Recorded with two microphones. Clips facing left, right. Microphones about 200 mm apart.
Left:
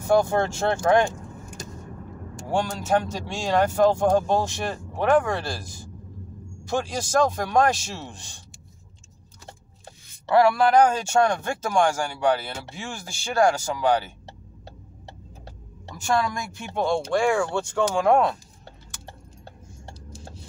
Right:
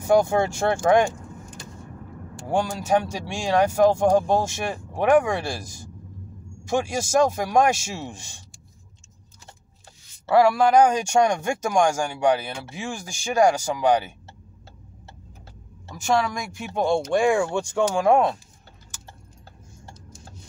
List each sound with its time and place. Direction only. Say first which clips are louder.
0.1 s speech: right 1 dB; 15° right (ahead or behind)
1.6 s vehicle: left 4 dB; 40° left (ahead or behind)
2.9 s speech: right 1 dB; 10° right (ahead or behind)
6.7 s speech: right 2 dB; 10° right (ahead or behind)
10.2 s speech: right 1 dB; 10° right (ahead or behind)
16.2 s speech: right 1 dB; 10° right (ahead or behind)